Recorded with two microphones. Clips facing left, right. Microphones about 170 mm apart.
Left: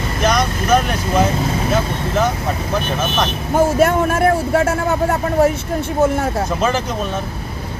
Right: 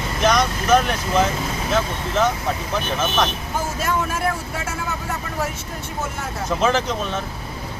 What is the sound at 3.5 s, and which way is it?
Speech, 55° left (ahead or behind).